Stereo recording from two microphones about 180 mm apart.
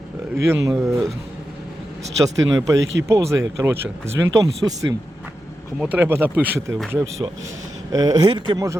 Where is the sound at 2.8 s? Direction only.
85° right.